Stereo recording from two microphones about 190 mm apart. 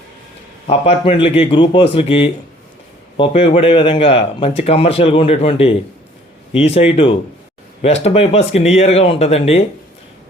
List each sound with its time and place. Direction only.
0.7 s speech: 30° left (ahead or behind)